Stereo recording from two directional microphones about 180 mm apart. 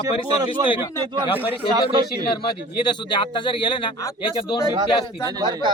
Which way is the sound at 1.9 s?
25° right (ahead or behind).